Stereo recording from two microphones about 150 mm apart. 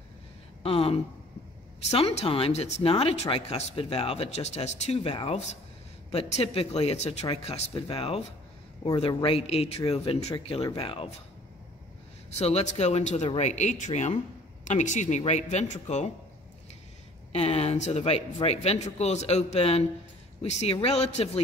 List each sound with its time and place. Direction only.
0.7 s a man's voice: 40° left (ahead or behind)
12.4 s a man's voice: 45° left (ahead or behind)
17.3 s a man's voice: 45° left (ahead or behind)